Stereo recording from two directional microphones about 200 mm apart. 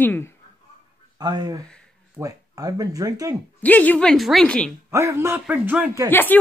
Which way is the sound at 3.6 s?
10° left (ahead or behind).